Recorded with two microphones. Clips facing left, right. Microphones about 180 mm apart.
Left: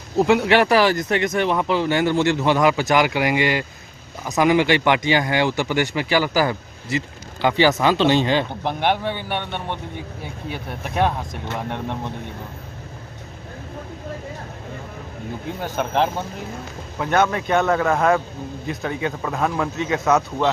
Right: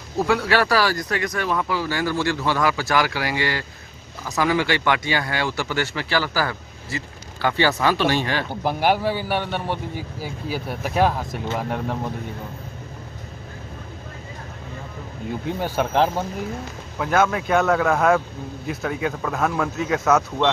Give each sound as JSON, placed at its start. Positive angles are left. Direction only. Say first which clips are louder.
{"t": 0.3, "sound": "speech", "louder": "left 3 dB", "side_deg": 20}
{"t": 8.6, "sound": "speech", "louder": "right 6 dB", "side_deg": -5}
{"t": 15.6, "sound": "speech", "louder": "right 1 dB", "side_deg": -10}